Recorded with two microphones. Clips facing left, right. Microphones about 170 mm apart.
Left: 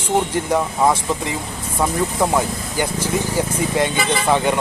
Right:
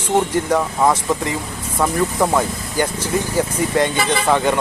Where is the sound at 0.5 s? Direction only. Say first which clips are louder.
Even; 10° left (ahead or behind).